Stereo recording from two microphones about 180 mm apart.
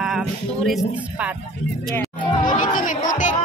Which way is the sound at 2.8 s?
45° left (ahead or behind).